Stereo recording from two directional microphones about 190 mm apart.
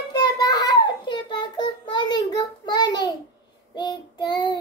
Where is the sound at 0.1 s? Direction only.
20° left (ahead or behind).